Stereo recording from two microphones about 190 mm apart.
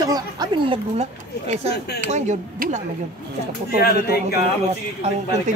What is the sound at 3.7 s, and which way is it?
Speech, 55° left (ahead or behind).